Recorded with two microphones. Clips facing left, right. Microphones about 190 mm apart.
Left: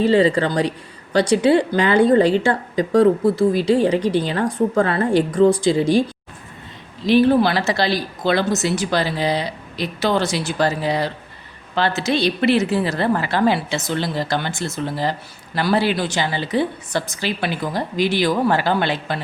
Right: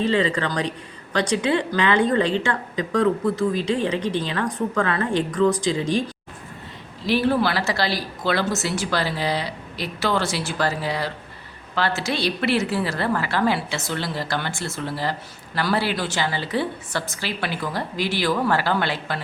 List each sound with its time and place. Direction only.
0.0 s a woman's voice: 35° left (ahead or behind)
7.1 s speech: 20° left (ahead or behind)